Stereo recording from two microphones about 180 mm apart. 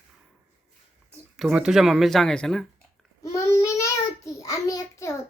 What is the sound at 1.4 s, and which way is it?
Speech, centre (ahead or behind).